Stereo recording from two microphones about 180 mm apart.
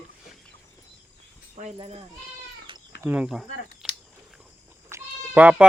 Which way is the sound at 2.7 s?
30° right (ahead or behind).